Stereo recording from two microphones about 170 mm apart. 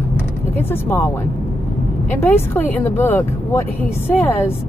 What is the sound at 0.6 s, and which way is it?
Speech, 15° left (ahead or behind).